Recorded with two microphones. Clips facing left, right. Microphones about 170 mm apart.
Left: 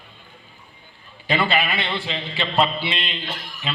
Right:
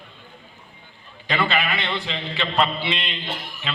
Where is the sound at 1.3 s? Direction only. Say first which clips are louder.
Left 2 dB; 10° left (ahead or behind).